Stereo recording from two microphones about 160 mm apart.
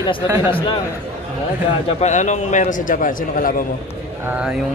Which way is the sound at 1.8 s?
45° left (ahead or behind).